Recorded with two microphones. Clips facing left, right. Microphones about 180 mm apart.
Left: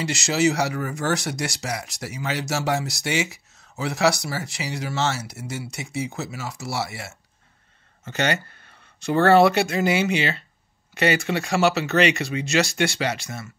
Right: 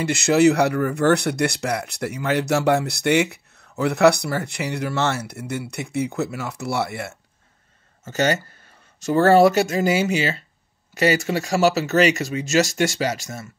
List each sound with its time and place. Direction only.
0.0 s speech: 55° right (ahead or behind)
8.0 s speech: 40° right (ahead or behind)